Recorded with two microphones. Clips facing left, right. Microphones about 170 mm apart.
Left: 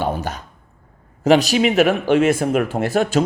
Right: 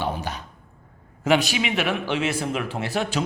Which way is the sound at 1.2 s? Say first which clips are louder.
Left 7 dB; 40° left (ahead or behind).